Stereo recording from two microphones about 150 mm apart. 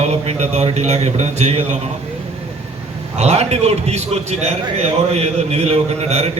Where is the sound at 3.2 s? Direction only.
45° right (ahead or behind).